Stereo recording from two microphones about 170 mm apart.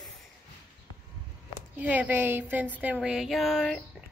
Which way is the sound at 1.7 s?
10° right (ahead or behind).